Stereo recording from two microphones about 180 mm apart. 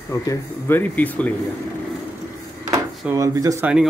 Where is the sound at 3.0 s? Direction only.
15° right (ahead or behind).